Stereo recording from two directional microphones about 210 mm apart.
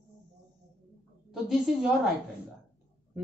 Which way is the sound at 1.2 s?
Centre (ahead or behind).